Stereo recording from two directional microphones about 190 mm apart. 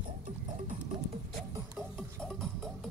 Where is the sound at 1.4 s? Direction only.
Centre (ahead or behind).